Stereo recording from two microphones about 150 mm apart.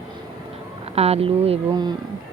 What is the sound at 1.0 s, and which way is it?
Speech, 40° right (ahead or behind).